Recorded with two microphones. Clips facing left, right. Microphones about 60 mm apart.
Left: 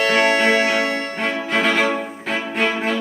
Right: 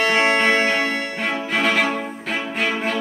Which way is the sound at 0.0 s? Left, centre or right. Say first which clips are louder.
Left 1 dB; right.